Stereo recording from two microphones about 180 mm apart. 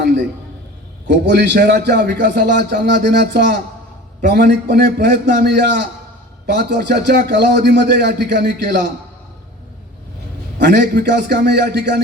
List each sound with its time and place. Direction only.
1.0 s a man's voice: 70° right (ahead or behind)
10.6 s a man's voice: 65° right (ahead or behind)